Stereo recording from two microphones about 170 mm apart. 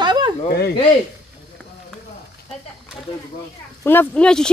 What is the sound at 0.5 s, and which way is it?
Speech, 70° left (ahead or behind).